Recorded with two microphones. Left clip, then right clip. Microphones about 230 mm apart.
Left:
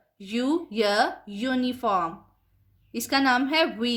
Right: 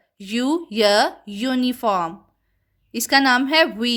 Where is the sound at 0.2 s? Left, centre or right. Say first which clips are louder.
Right 4 dB; right.